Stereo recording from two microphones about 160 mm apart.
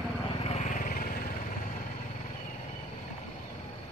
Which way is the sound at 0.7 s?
60° left (ahead or behind).